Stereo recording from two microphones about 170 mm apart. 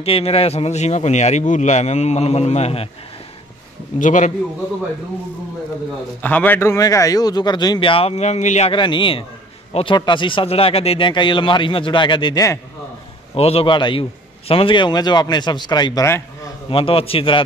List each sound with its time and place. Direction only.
0.0 s a man's voice: 35° left (ahead or behind)
4.0 s a man's voice: 45° left (ahead or behind)
6.2 s speech: 10° left (ahead or behind); by 8.7 s 40° left (ahead or behind)
8.7 s speech: 30° left (ahead or behind)
13.3 s a man's voice: 35° left (ahead or behind); by 16.7 s 20° left (ahead or behind)
16.7 s a man's voice: 35° left (ahead or behind)